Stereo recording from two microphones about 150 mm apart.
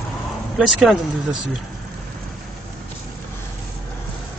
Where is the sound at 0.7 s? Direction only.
5° right (ahead or behind).